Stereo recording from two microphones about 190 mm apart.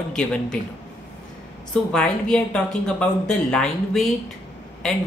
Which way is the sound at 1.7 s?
5° left (ahead or behind).